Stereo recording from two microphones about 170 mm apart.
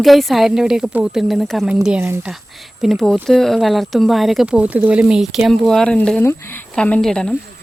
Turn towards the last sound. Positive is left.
turn(degrees=5)  # may be behind; listen again after turning